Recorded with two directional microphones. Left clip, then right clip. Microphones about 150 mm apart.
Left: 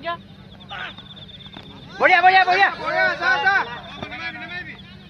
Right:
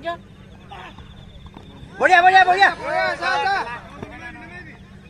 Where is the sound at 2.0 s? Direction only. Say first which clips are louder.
Right 1 dB; 85° right; by 3.7 s 55° right (ahead or behind).